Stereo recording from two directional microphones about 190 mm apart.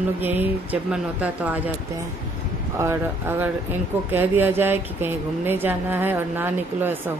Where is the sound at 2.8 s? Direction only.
10° right (ahead or behind).